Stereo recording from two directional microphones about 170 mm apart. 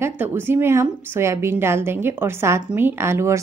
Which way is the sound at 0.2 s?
15° right (ahead or behind).